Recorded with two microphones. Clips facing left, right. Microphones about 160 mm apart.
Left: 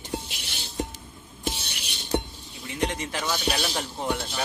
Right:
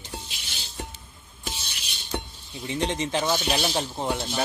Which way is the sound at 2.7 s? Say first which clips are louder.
Right 3 dB; 25° right (ahead or behind).